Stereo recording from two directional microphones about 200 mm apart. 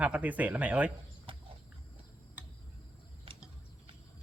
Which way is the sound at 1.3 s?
25° right (ahead or behind).